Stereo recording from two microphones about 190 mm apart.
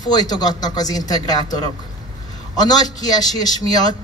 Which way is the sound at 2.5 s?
20° left (ahead or behind).